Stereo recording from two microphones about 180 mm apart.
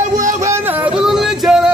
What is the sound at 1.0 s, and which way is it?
Music, 5° right (ahead or behind).